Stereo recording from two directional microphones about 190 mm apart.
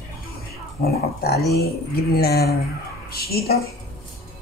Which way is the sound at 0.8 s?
55° left (ahead or behind).